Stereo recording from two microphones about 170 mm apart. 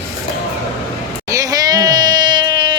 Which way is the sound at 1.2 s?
20° right (ahead or behind).